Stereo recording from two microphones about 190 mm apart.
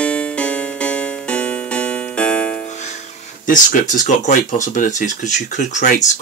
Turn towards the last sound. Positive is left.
turn(degrees=40)  # may be behind; listen again after turning